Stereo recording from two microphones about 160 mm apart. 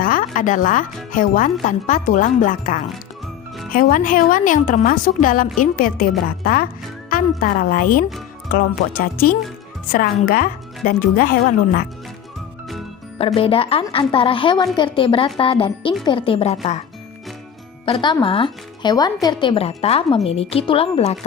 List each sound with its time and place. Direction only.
0.0 s a woman's voice: 60° left (ahead or behind)
13.1 s speech: 35° left (ahead or behind)
17.8 s speech: 30° left (ahead or behind)